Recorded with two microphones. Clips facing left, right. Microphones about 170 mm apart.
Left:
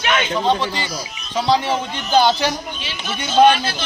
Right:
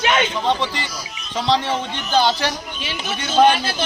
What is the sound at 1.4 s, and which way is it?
A man's voice, 5° left (ahead or behind).